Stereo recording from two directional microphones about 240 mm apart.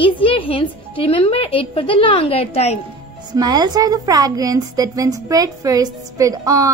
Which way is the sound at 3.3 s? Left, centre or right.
Centre.